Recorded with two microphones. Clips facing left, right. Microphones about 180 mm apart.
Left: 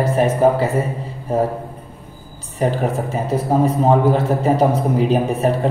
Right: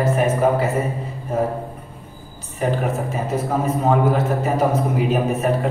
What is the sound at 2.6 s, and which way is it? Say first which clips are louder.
A man's voice: left 2 dB; 30° left (ahead or behind).